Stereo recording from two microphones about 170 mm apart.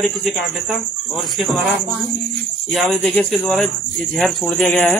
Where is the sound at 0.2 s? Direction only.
Centre (ahead or behind).